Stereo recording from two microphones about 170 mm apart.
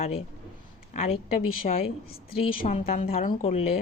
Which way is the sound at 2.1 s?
65° left (ahead or behind).